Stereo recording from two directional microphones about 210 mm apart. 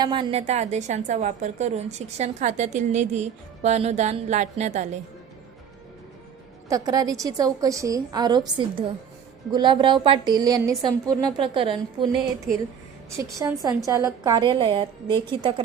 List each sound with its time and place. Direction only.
0.0 s a woman's voice: 25° right (ahead or behind)
6.7 s a woman's voice: 15° right (ahead or behind)
13.1 s a woman's voice: 15° right (ahead or behind)